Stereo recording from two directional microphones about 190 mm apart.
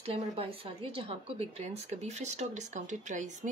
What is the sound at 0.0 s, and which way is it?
Speech, 30° right (ahead or behind).